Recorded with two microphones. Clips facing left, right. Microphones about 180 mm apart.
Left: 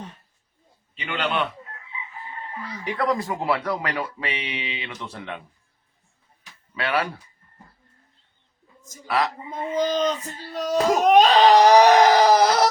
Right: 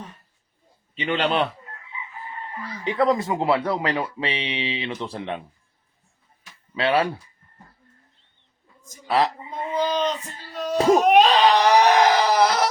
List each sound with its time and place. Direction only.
0.9 s a man's voice: 35° right (ahead or behind)
2.8 s speech: 25° right (ahead or behind)
6.7 s speech: 25° right (ahead or behind)
9.0 s speech: 30° right (ahead or behind)
9.8 s wail: 40° left (ahead or behind)